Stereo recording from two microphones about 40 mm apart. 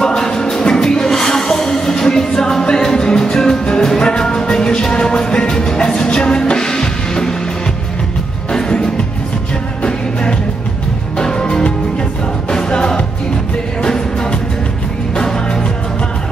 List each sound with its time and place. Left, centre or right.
0.0 s music: centre
8.5 s music: centre
11.1 s music: centre